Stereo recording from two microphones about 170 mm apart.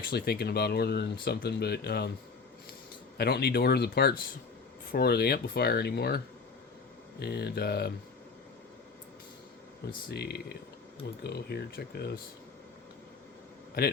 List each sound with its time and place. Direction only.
0.1 s speech: 65° left (ahead or behind)
3.2 s speech: 70° left (ahead or behind)
10.1 s speech: 70° left (ahead or behind)